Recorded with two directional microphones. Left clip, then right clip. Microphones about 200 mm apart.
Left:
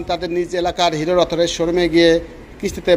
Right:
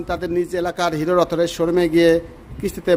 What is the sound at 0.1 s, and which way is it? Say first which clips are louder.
A man's voice: left 2 dB; 25° right (ahead or behind).